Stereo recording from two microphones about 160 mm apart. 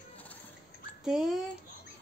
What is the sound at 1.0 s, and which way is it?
Speech, centre (ahead or behind).